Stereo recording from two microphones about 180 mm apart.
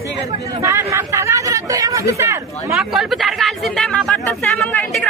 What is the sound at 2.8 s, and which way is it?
Speech, centre (ahead or behind).